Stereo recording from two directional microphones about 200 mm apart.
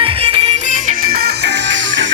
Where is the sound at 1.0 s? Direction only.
50° right (ahead or behind); by 2.1 s 65° right (ahead or behind).